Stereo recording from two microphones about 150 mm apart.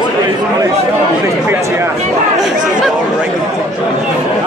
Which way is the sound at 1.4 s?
15° right (ahead or behind).